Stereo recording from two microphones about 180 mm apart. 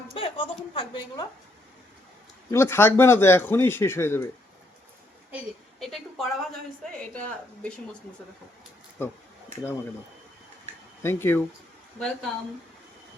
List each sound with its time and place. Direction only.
0.2 s a woman's voice: 30° left (ahead or behind)
2.5 s speech: 15° left (ahead or behind)
5.8 s a woman's voice: centre (ahead or behind)
11.0 s a woman's voice: 15° left (ahead or behind)